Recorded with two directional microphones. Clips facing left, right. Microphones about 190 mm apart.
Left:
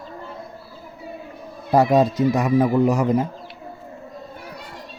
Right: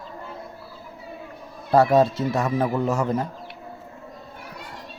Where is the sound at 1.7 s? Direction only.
15° left (ahead or behind).